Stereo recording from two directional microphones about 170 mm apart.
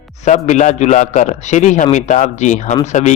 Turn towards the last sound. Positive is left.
turn(degrees=45)  # may be behind; listen again after turning